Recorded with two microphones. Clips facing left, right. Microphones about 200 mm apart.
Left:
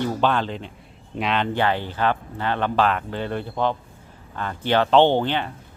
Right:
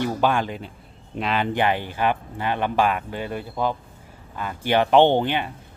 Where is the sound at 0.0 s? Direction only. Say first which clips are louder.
Even; 10° right (ahead or behind).